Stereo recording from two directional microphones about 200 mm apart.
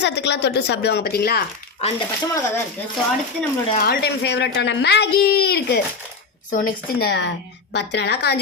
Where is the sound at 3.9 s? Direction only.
60° left (ahead or behind).